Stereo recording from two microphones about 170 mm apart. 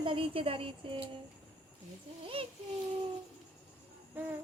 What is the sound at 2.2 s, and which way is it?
Speech, 35° right (ahead or behind).